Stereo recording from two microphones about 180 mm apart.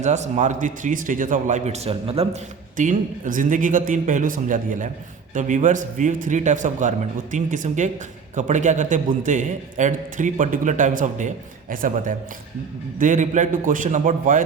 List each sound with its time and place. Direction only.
0.0 s a man's voice: 40° right (ahead or behind)